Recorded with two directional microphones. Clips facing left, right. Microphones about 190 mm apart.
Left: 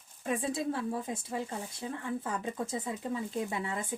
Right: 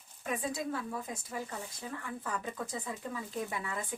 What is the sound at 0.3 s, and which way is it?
Speech, 30° left (ahead or behind).